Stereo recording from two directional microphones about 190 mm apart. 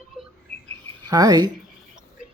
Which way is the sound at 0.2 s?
5° right (ahead or behind).